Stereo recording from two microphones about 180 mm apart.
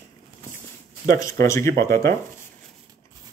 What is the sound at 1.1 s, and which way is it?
Speech, 20° left (ahead or behind).